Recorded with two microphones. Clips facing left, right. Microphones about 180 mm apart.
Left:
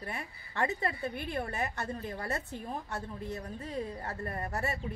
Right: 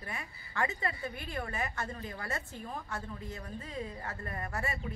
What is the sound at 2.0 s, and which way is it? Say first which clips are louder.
Speech: left 3 dB; 35° left (ahead or behind).